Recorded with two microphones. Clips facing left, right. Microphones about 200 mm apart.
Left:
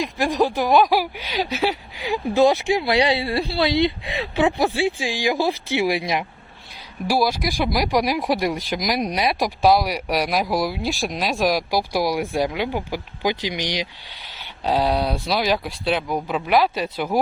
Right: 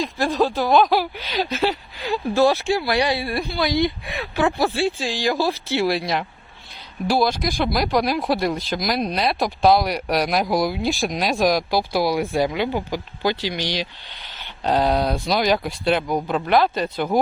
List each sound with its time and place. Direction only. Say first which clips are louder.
0.0 s speech: even; 15° left (ahead or behind)
14.6 s speech: right 1 dB; 5° left (ahead or behind)